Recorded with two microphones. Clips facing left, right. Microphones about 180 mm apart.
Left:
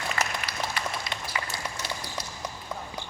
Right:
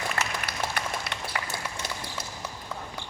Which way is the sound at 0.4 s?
60° right (ahead or behind).